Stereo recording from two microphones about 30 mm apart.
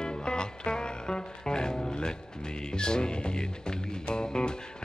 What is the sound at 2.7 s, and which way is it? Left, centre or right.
Music, left.